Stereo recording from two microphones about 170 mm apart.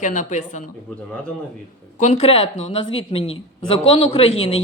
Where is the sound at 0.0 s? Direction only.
45° left (ahead or behind).